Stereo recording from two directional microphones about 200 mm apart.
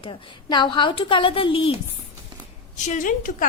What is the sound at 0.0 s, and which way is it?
A woman's voice, 25° left (ahead or behind).